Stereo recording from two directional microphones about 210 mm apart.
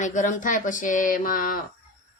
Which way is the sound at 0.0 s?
35° left (ahead or behind).